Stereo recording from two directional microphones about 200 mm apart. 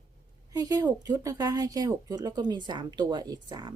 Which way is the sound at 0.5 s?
20° right (ahead or behind).